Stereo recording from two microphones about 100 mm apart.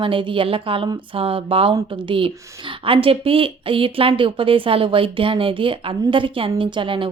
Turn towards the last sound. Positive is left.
turn(degrees=-60)  # may be behind; listen again after turning